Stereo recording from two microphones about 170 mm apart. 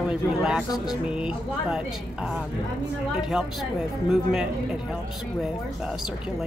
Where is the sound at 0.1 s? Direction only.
5° right (ahead or behind).